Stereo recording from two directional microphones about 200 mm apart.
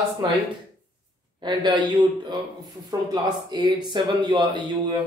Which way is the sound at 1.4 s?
20° right (ahead or behind).